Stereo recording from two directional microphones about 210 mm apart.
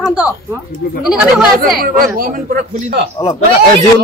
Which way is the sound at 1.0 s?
5° right (ahead or behind).